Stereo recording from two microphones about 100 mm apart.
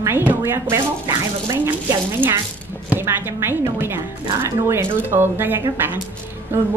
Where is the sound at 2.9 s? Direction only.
20° right (ahead or behind).